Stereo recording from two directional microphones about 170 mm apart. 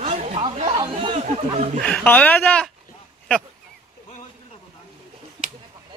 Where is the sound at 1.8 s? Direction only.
10° left (ahead or behind).